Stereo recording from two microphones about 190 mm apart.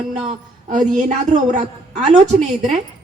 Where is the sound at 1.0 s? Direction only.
40° right (ahead or behind).